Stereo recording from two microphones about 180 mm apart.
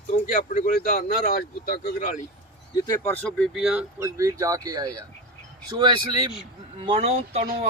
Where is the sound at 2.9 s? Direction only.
10° left (ahead or behind).